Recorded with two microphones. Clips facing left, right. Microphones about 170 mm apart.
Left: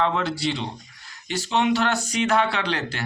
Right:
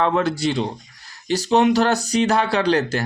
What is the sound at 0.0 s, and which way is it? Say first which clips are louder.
A man's voice: right 4 dB; 50° right (ahead or behind).